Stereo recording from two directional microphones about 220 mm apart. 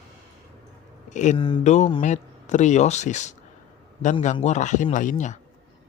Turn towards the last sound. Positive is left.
turn(degrees=35)  # may be behind; listen again after turning